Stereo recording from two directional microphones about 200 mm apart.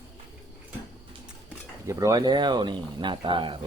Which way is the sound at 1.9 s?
15° right (ahead or behind).